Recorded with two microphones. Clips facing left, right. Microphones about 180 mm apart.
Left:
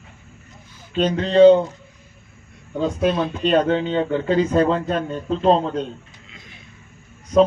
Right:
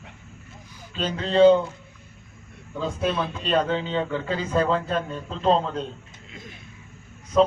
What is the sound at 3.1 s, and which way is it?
Speech, 45° left (ahead or behind).